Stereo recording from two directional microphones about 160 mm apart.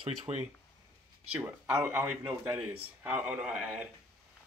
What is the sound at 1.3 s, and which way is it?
Speech, 10° right (ahead or behind).